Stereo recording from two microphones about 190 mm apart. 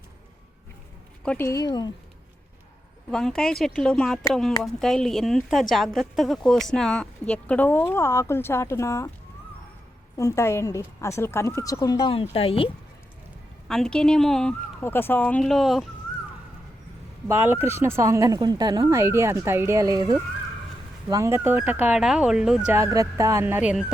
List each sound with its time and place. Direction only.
1.2 s a woman's voice: 5° left (ahead or behind)
1.5 s speech: 20° left (ahead or behind)
3.1 s speech: 5° left (ahead or behind)
10.2 s a woman's voice: 15° left (ahead or behind)
13.7 s speech: centre (ahead or behind)
17.2 s speech: 10° right (ahead or behind)